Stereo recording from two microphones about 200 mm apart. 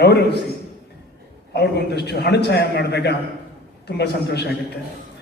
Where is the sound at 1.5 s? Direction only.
55° left (ahead or behind).